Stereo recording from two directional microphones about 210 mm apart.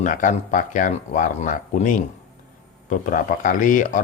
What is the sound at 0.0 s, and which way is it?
Speech, 40° left (ahead or behind).